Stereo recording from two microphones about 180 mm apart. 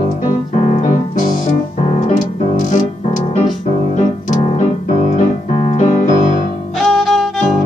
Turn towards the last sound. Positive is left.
turn(degrees=0)  # may be behind; listen again after turning